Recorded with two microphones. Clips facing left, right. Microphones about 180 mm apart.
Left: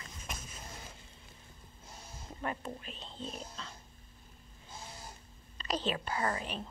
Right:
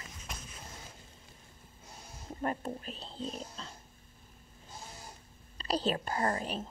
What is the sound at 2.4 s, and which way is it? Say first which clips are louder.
Speech: right 4 dB; 40° right (ahead or behind).